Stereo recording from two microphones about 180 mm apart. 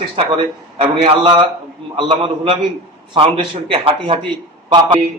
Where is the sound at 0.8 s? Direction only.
30° right (ahead or behind).